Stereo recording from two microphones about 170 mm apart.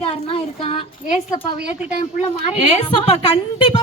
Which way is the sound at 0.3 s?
35° left (ahead or behind).